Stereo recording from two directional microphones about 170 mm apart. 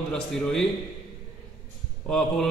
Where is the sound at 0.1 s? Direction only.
5° left (ahead or behind).